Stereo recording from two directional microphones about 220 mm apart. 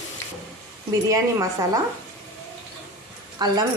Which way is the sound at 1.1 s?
15° right (ahead or behind).